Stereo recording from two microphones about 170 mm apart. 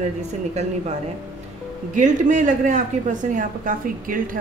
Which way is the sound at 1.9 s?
45° right (ahead or behind).